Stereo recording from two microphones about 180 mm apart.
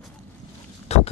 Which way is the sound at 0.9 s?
35° left (ahead or behind).